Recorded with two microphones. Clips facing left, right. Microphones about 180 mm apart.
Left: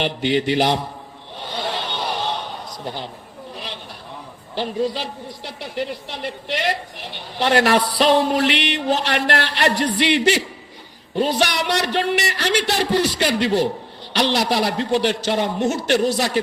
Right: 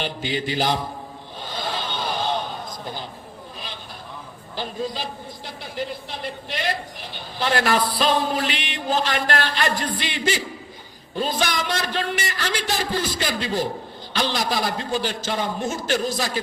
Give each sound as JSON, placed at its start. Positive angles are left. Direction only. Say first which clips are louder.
{"t": 0.0, "sound": "a woman's voice", "louder": "left 7 dB", "side_deg": 70}
{"t": 1.4, "sound": "a sound", "louder": "left 3 dB", "side_deg": 70}
{"t": 4.5, "sound": "a woman's voice", "louder": "left 6 dB", "side_deg": 70}